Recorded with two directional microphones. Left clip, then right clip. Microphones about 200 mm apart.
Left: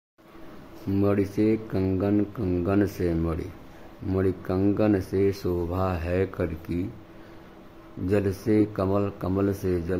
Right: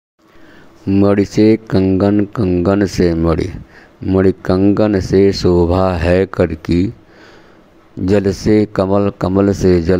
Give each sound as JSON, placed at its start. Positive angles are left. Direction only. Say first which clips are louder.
{"t": 0.9, "sound": "speech", "louder": "right 12 dB", "side_deg": -40}
{"t": 8.0, "sound": "speech", "louder": "right 12 dB", "side_deg": -40}